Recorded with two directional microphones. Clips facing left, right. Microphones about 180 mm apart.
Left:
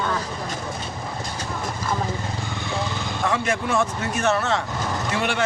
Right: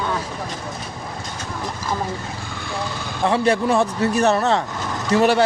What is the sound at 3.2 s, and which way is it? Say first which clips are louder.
A man's voice: right 7 dB; 35° right (ahead or behind).